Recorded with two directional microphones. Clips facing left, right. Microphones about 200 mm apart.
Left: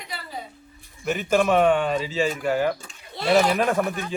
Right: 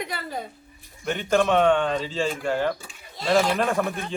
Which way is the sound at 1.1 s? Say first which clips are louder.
Left 1 dB; 5° left (ahead or behind).